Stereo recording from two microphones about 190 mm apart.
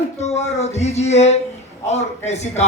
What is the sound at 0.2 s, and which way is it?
Child singing, 35° left (ahead or behind).